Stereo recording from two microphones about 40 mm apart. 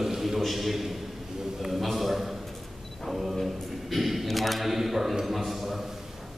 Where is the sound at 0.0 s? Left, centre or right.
Centre.